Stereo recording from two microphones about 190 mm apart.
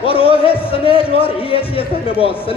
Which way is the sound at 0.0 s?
30° left (ahead or behind).